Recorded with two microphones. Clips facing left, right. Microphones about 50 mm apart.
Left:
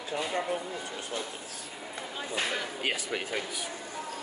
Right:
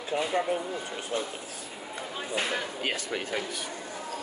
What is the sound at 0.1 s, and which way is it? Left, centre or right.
Speech, right.